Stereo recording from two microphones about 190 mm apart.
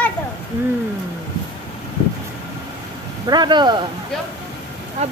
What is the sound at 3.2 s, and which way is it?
Speech, 25° right (ahead or behind).